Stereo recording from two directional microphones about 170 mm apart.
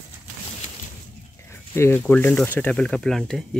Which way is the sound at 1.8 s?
15° left (ahead or behind).